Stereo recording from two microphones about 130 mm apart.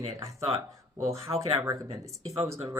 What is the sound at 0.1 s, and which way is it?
A man's voice, 25° right (ahead or behind).